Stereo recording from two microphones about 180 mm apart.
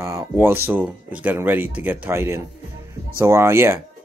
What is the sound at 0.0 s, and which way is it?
Speech, 10° right (ahead or behind).